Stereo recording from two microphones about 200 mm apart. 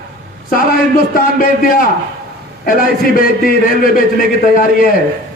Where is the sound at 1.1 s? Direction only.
45° left (ahead or behind).